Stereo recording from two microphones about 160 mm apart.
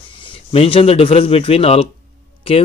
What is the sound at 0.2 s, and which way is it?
Speech, 35° left (ahead or behind).